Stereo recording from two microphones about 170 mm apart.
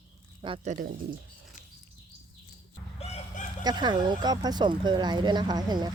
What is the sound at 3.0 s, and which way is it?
Chicken, 40° left (ahead or behind).